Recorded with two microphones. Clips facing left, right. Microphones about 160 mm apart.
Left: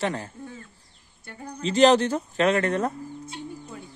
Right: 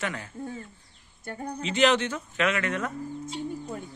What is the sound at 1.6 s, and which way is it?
A man's voice, 35° left (ahead or behind).